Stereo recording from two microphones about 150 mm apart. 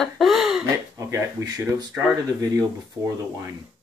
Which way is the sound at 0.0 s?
Centre (ahead or behind).